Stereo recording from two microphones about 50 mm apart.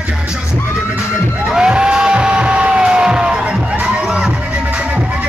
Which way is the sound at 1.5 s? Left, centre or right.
Centre.